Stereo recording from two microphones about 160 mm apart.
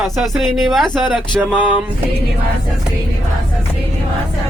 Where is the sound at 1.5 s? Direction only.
10° right (ahead or behind).